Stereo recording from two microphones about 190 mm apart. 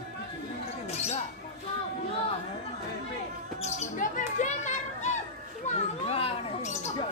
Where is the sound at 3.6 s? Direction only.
40° left (ahead or behind).